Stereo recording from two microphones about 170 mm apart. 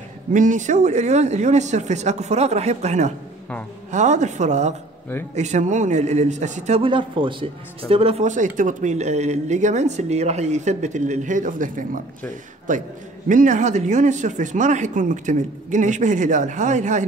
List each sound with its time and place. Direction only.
0.3 s a man's voice: 50° right (ahead or behind)